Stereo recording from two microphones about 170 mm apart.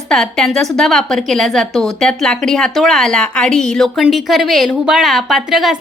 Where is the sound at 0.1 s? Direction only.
5° left (ahead or behind).